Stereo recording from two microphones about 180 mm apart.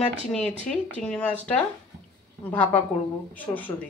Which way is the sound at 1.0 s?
5° left (ahead or behind).